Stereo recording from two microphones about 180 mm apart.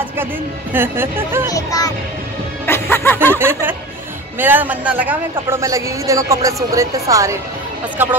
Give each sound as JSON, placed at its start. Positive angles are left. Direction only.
{"t": 0.7, "sound": "a man's voice", "side_deg": -10}
{"t": 1.5, "sound": "speech", "side_deg": 20}
{"t": 2.6, "sound": "music", "side_deg": 15}
{"t": 3.3, "sound": "a man's voice", "side_deg": -15}